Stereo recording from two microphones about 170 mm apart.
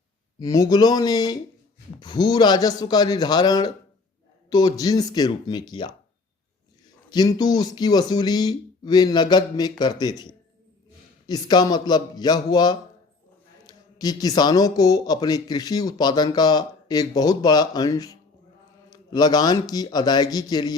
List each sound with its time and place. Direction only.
0.3 s speech: 20° left (ahead or behind)
7.1 s speech: 25° left (ahead or behind)